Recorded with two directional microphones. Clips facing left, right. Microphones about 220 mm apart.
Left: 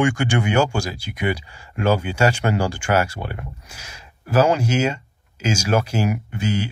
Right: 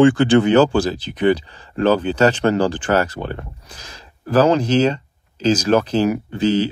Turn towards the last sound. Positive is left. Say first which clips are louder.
# right 7 dB
turn(degrees=-35)  # may be behind; listen again after turning